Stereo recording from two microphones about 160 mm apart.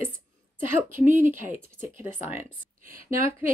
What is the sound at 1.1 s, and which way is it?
Speech, 15° right (ahead or behind).